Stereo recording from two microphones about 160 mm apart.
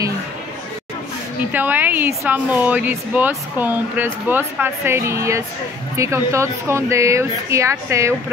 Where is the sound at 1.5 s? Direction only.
10° right (ahead or behind).